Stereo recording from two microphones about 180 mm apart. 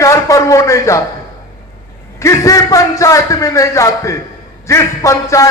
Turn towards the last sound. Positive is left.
turn(degrees=15)  # may be behind; listen again after turning